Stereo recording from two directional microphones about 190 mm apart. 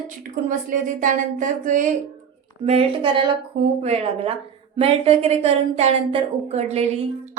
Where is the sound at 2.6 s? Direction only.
30° right (ahead or behind).